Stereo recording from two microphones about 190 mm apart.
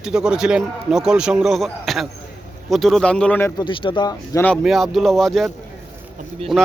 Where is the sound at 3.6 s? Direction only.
25° left (ahead or behind).